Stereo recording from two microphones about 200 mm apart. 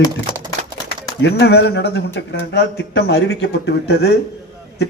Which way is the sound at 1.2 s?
55° left (ahead or behind).